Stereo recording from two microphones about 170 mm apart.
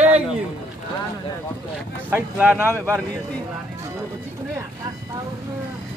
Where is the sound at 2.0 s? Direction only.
10° right (ahead or behind).